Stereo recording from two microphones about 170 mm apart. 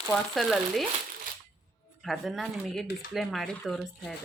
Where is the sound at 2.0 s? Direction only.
Centre (ahead or behind).